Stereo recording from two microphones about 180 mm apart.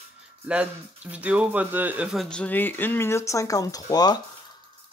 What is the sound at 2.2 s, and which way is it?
Speech, 5° left (ahead or behind).